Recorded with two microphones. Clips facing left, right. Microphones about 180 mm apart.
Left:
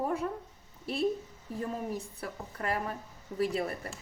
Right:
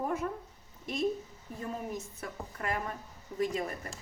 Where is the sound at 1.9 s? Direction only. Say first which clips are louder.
Left 2 dB; 35° left (ahead or behind).